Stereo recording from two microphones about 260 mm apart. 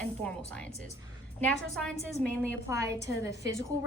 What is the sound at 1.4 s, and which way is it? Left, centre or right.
A woman's voice, centre.